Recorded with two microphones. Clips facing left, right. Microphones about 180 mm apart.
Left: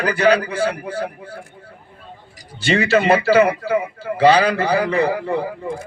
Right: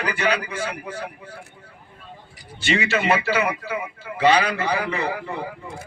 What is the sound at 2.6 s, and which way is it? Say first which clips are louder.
A man's voice: left 6 dB; 35° left (ahead or behind).